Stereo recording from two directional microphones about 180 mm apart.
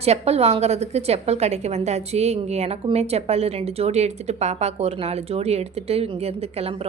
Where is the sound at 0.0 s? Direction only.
35° right (ahead or behind).